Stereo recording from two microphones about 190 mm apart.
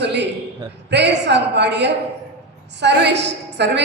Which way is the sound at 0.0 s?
65° right (ahead or behind).